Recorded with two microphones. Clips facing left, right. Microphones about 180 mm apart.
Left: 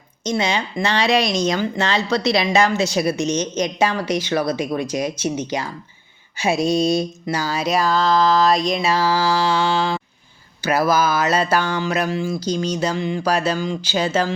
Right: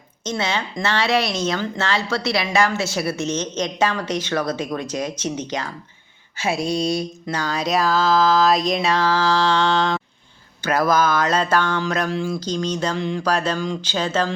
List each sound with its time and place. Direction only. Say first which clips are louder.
0.3 s speech: left 3 dB; 15° left (ahead or behind)
6.3 s a sound: left 3 dB; 15° left (ahead or behind)
6.7 s mantra: left 5 dB; 20° left (ahead or behind)
7.3 s music: right 1 dB; 5° left (ahead or behind)
10.6 s speech: left 1 dB; 10° left (ahead or behind)